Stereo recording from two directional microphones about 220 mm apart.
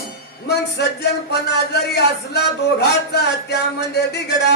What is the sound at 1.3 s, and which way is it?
A man's voice, 50° left (ahead or behind).